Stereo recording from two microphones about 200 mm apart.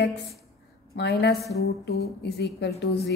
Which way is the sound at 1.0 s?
55° left (ahead or behind).